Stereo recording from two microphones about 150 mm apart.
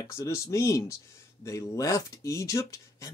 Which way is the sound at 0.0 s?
20° left (ahead or behind).